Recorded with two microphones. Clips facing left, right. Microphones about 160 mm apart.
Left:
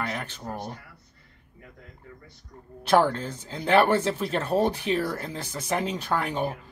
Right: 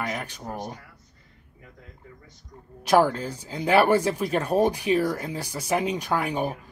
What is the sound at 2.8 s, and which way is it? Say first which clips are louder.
Speech: right 1 dB; 10° right (ahead or behind).